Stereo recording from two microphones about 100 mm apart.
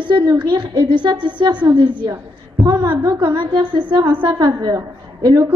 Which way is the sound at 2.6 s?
40° right (ahead or behind).